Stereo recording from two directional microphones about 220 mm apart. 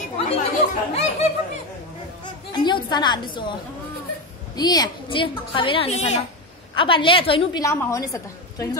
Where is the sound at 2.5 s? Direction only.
20° left (ahead or behind).